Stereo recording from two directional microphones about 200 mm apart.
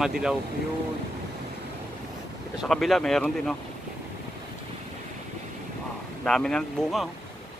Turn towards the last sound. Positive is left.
turn(degrees=0)  # may be behind; listen again after turning